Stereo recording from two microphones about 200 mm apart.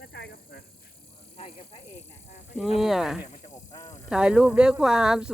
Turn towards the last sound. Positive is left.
turn(degrees=-5)  # may be behind; listen again after turning